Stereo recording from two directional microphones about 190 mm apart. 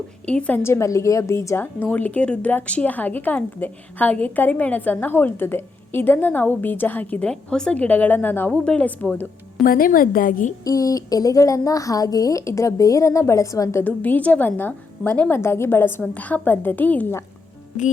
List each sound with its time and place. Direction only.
0.3 s a woman's voice: 5° left (ahead or behind)
9.6 s a woman's voice: 50° left (ahead or behind)
10.6 s a woman's voice: 20° left (ahead or behind)